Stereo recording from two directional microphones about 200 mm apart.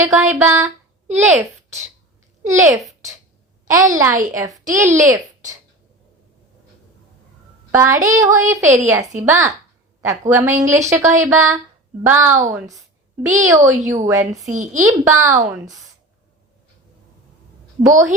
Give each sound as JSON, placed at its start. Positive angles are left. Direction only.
{"t": 0.0, "sound": "a woman's voice", "side_deg": -10}
{"t": 2.4, "sound": "a woman's voice", "side_deg": -15}
{"t": 4.7, "sound": "a woman's voice", "side_deg": -40}
{"t": 7.7, "sound": "a woman's voice", "side_deg": -15}
{"t": 14.5, "sound": "a woman's voice", "side_deg": -40}
{"t": 15.0, "sound": "a woman's voice", "side_deg": -15}
{"t": 17.8, "sound": "a woman's voice", "side_deg": -15}